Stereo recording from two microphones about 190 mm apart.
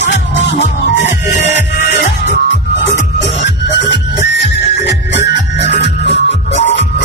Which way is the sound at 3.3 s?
65° left (ahead or behind).